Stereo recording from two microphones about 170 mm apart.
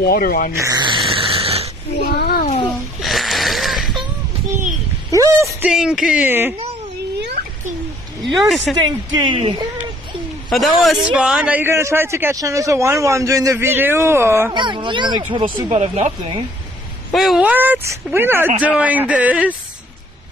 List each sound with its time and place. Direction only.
0.0 s speech: 60° left (ahead or behind)
0.6 s a sound: 20° right (ahead or behind)
2.0 s a child's voice: 65° left (ahead or behind)
3.0 s a sound: centre (ahead or behind)
5.1 s speech: 20° right (ahead or behind)
5.6 s speech: 5° right (ahead or behind)
8.3 s speech: centre (ahead or behind)
8.7 s speech: 25° right (ahead or behind)
10.5 s a man's voice: centre (ahead or behind)
14.5 s speech: 30° right (ahead or behind)
17.1 s a man's voice: centre (ahead or behind)